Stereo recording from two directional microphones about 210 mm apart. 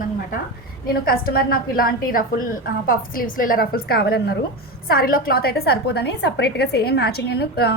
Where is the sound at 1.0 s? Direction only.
45° left (ahead or behind).